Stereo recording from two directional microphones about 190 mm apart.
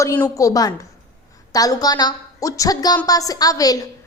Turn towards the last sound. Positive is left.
turn(degrees=20)  # may be behind; listen again after turning